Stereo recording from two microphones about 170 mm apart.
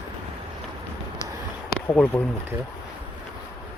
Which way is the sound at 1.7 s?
5° left (ahead or behind).